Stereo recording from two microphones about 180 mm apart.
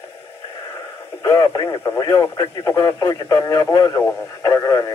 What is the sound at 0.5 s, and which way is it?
Radio, 15° left (ahead or behind).